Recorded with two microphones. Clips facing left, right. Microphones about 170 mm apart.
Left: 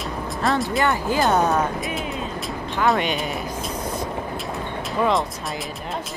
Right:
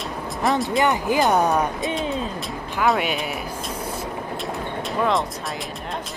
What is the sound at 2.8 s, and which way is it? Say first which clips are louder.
Speech: even; 5° right (ahead or behind).